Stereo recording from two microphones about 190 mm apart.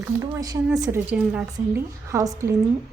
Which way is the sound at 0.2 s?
20° right (ahead or behind).